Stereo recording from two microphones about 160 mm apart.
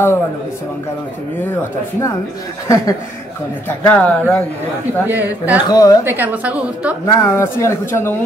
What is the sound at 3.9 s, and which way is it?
Speech, 10° left (ahead or behind).